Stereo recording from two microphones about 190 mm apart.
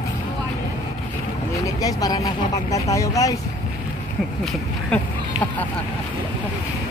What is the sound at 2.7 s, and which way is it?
Speech, 15° left (ahead or behind).